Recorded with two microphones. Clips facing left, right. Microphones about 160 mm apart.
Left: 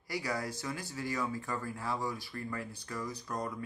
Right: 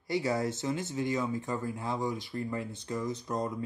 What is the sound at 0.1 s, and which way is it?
Speech, 25° right (ahead or behind).